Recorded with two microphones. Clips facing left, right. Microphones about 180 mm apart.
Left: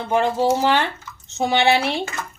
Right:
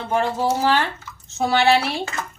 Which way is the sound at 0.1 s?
20° left (ahead or behind).